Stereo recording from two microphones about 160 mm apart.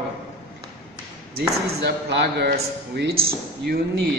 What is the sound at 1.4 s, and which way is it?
Speech, 90° right.